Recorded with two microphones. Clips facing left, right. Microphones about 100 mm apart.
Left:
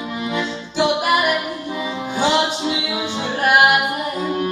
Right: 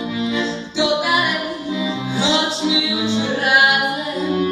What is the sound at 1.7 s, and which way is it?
Music, 50° left (ahead or behind).